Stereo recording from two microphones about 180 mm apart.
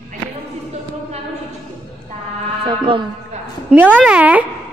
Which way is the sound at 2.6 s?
30° right (ahead or behind).